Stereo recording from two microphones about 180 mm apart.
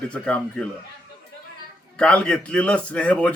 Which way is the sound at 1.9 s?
5° left (ahead or behind).